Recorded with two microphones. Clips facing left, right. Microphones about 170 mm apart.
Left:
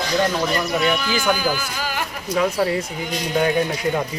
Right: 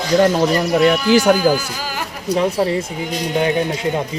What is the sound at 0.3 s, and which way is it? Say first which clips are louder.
Speech: right 6 dB; 40° right (ahead or behind).